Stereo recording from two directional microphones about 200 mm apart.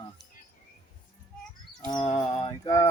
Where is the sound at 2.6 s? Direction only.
15° left (ahead or behind).